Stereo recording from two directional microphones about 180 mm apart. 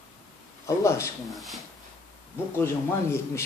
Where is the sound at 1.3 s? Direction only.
Centre (ahead or behind).